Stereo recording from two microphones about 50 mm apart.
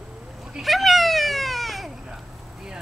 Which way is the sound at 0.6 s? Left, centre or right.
Centre.